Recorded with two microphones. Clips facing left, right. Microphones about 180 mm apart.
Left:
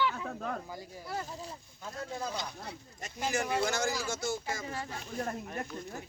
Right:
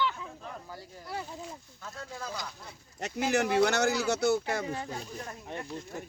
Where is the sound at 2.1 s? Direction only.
25° left (ahead or behind).